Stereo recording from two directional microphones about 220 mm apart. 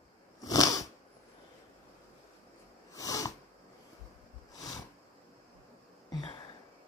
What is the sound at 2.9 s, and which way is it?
Sniff, 15° left (ahead or behind).